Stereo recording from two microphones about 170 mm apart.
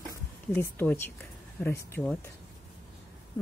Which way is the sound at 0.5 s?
10° left (ahead or behind).